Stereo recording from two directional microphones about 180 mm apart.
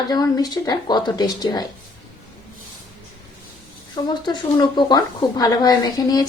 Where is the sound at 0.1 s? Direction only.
20° left (ahead or behind).